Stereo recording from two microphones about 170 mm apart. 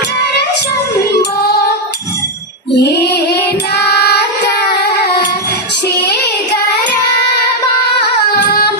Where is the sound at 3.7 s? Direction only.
75° left (ahead or behind).